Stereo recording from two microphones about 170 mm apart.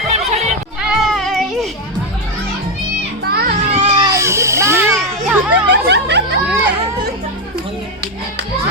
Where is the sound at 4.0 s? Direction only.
20° right (ahead or behind).